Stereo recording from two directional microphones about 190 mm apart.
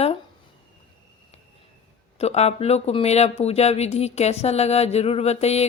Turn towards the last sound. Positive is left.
turn(degrees=35)  # may be behind; listen again after turning